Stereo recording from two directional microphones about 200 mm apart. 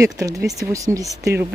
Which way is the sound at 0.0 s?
15° right (ahead or behind).